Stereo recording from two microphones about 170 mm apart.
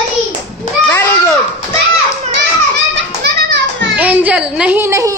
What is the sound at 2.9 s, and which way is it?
Children playing, 90° right.